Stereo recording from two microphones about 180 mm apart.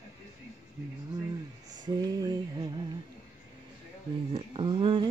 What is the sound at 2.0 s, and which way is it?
Music, 20° right (ahead or behind).